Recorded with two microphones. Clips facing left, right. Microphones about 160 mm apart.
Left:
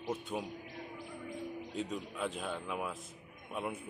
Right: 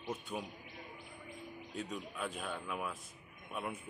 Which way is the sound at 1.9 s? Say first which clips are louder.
Left 3 dB; 25° left (ahead or behind).